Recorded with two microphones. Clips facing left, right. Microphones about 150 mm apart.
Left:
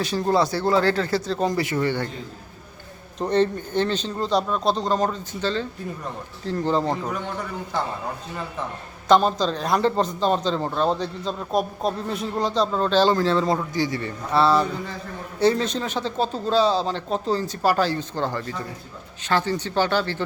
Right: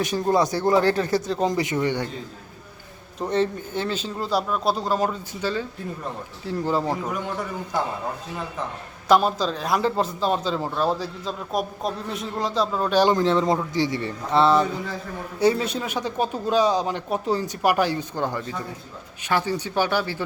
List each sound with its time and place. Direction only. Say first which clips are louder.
0.0 s speech: even; 15° right (ahead or behind)
3.2 s a man's voice: left 2 dB; 5° right (ahead or behind)
9.0 s a man's voice: left 1 dB; 5° right (ahead or behind)